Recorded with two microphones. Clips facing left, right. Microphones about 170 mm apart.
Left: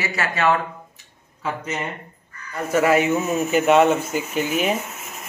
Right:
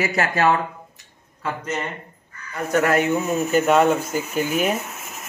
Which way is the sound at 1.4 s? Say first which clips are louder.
Even; 10° left (ahead or behind).